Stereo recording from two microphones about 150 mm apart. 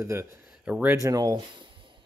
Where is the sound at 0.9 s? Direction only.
25° right (ahead or behind).